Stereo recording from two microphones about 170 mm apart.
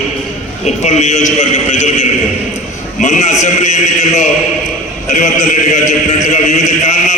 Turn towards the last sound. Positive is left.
turn(degrees=40)  # may be behind; listen again after turning